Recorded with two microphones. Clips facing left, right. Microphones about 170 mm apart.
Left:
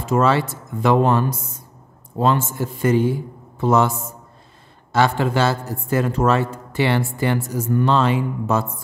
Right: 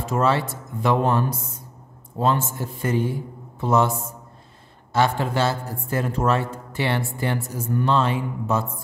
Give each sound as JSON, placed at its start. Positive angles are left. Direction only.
{"t": 0.0, "sound": "speech", "side_deg": 90}
{"t": 4.9, "sound": "speech", "side_deg": 90}